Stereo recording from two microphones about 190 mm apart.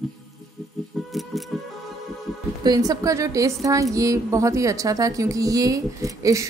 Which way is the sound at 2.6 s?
20° right (ahead or behind).